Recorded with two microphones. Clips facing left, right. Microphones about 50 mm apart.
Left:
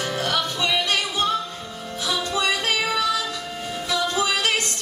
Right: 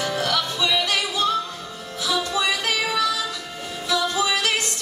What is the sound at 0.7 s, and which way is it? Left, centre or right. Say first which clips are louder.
Music: right 1 dB; left.